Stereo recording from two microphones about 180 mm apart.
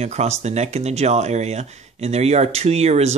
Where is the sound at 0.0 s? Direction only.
40° right (ahead or behind).